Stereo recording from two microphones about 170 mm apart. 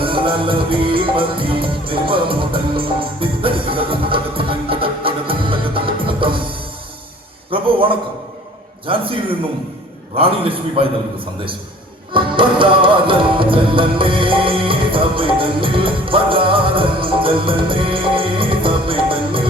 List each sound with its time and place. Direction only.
0.0 s music: 30° right (ahead or behind)
7.5 s a sound: 30° right (ahead or behind)
8.9 s a man's voice: 30° right (ahead or behind)
10.2 s a man's voice: 35° right (ahead or behind)
12.1 s music: 30° right (ahead or behind)